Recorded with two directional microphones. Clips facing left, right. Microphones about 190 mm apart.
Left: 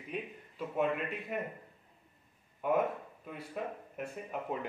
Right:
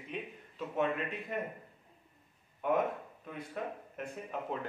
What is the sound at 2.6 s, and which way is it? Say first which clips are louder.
Speech: even; 5° left (ahead or behind).